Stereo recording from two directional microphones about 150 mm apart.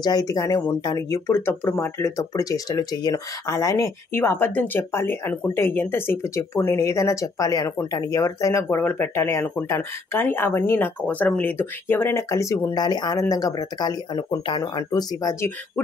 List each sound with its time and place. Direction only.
0.0 s speech: 25° left (ahead or behind)